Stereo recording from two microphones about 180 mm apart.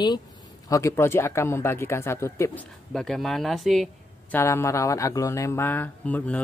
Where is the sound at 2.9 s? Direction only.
Centre (ahead or behind).